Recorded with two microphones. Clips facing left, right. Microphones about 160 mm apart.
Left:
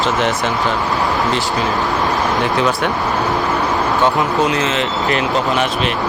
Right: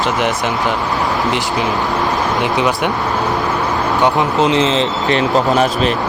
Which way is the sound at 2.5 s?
15° right (ahead or behind).